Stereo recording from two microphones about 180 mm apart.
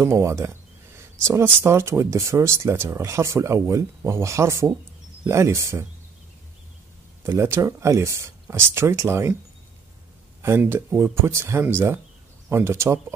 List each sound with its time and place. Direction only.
0.0 s speech: 15° right (ahead or behind)
7.2 s speech: 15° right (ahead or behind)
10.4 s speech: 15° right (ahead or behind)